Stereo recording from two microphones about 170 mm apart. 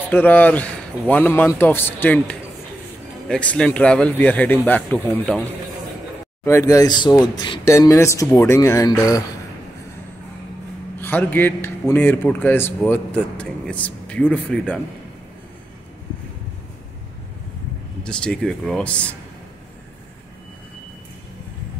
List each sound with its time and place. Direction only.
0.1 s a man's voice: 10° left (ahead or behind)
6.4 s speech: 20° left (ahead or behind)
11.0 s a man's voice: 10° left (ahead or behind)
18.0 s speech: 5° left (ahead or behind)